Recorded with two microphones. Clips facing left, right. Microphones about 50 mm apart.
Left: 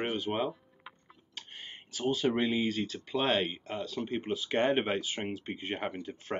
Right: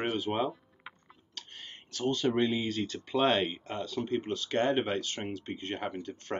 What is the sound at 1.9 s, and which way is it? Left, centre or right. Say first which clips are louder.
Speech: right 1 dB; centre.